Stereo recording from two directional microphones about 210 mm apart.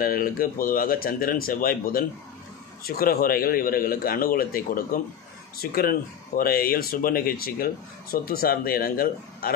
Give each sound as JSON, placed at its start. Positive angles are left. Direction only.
{"t": 0.0, "sound": "speech", "side_deg": 45}